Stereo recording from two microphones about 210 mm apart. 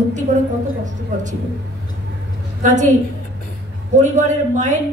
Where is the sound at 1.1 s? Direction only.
35° right (ahead or behind).